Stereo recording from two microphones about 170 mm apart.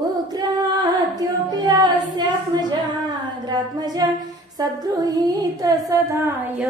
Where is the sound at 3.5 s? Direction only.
25° right (ahead or behind).